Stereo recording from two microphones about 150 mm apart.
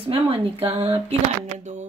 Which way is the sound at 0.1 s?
40° right (ahead or behind).